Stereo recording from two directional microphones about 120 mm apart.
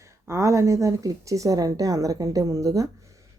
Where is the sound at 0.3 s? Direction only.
25° right (ahead or behind).